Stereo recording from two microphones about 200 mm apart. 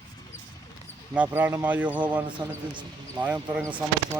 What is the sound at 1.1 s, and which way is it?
Speech, 10° right (ahead or behind).